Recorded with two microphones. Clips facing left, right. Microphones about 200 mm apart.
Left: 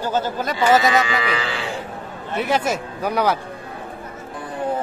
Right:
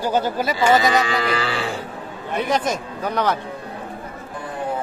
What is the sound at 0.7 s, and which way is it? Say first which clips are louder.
Speech: left 1 dB; centre (ahead or behind).